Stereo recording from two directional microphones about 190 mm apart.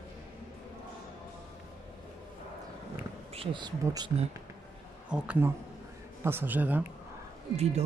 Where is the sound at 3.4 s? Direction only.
25° right (ahead or behind).